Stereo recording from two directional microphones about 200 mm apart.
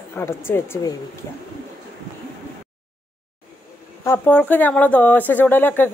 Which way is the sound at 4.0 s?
10° left (ahead or behind).